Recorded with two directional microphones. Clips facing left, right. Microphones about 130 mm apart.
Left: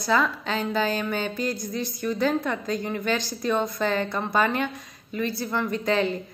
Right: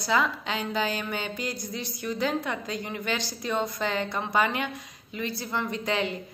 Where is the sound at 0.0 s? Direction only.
15° right (ahead or behind).